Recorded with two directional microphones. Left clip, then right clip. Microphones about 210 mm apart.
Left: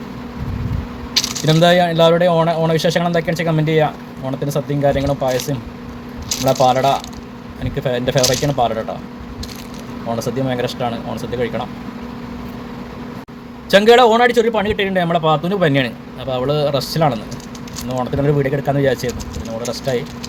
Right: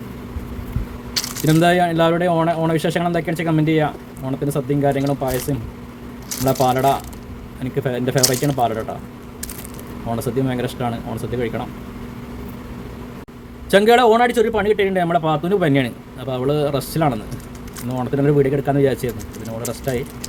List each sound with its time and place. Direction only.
1.1 s a man's voice: 15° right (ahead or behind)
6.4 s speech: 25° right (ahead or behind)
6.7 s a man's voice: 15° right (ahead or behind)
10.1 s a man's voice: 15° right (ahead or behind)
13.7 s a man's voice: 15° right (ahead or behind)